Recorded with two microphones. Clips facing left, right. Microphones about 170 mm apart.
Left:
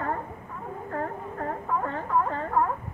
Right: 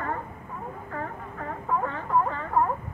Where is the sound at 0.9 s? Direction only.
45° left (ahead or behind).